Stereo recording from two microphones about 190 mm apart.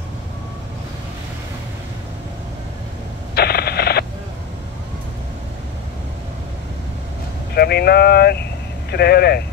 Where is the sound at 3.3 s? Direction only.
55° left (ahead or behind).